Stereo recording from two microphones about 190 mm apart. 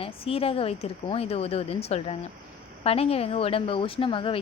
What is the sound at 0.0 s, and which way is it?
A woman's voice, 30° left (ahead or behind).